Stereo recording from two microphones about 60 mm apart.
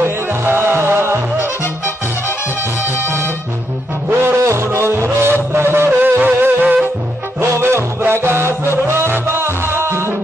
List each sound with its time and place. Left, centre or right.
0.0 s music: right
4.1 s music: right
5.9 s music: right
7.3 s music: right